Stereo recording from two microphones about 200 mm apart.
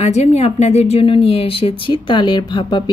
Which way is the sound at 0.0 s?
35° left (ahead or behind).